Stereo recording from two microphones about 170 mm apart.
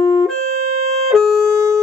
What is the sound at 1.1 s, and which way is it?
Music, 5° left (ahead or behind).